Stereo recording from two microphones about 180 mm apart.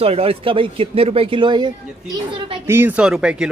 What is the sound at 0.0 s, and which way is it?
Speech, 35° right (ahead or behind).